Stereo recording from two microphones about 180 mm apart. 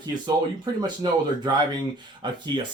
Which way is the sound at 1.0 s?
25° right (ahead or behind).